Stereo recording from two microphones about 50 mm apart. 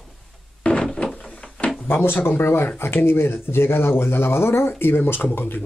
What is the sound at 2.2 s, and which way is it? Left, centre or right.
Speech, left.